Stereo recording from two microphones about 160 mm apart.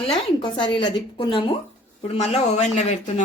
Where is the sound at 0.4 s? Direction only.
30° left (ahead or behind); by 3.2 s 50° left (ahead or behind).